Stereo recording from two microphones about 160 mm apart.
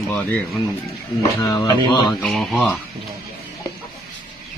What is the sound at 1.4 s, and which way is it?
Speech, 25° left (ahead or behind).